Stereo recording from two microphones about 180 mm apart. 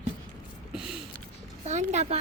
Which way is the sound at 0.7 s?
5° right (ahead or behind).